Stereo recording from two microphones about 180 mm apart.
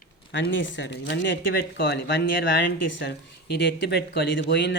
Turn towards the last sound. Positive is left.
turn(degrees=75)  # may be behind; listen again after turning